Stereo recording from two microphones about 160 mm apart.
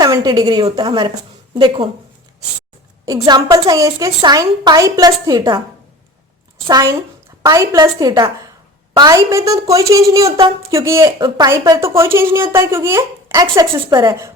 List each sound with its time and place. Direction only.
0.0 s a woman's voice: 25° right (ahead or behind)
3.2 s a woman's voice: 25° right (ahead or behind)
6.7 s a woman's voice: 25° right (ahead or behind)